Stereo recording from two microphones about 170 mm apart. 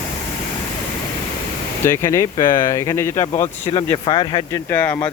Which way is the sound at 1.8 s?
15° left (ahead or behind).